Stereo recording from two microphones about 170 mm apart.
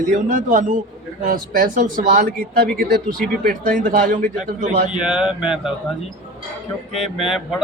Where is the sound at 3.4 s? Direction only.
55° right (ahead or behind).